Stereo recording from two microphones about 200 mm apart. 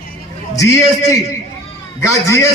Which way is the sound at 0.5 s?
15° left (ahead or behind).